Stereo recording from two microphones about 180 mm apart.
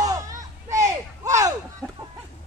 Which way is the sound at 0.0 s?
20° right (ahead or behind).